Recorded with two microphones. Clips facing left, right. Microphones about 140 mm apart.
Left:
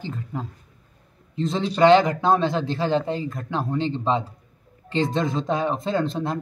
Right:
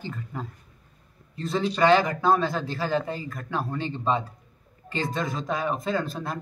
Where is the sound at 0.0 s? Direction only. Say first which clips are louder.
Left 3 dB; 15° left (ahead or behind).